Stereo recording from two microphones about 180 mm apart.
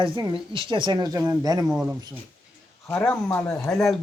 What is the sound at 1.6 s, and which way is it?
Speech, 5° right (ahead or behind).